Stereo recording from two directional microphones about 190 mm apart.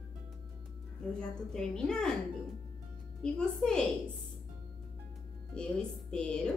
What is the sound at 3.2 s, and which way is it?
Speech, 5° left (ahead or behind).